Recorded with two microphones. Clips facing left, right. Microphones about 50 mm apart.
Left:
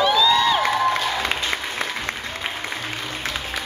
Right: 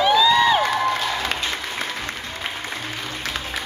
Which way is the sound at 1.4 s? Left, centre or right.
Left.